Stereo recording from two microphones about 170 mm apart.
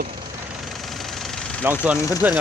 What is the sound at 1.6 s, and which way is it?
Speech, 10° right (ahead or behind).